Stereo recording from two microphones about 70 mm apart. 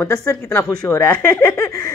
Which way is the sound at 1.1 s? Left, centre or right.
Centre.